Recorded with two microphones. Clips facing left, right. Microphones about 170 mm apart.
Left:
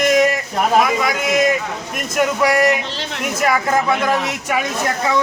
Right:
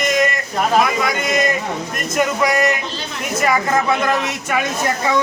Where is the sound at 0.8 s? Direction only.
Centre (ahead or behind).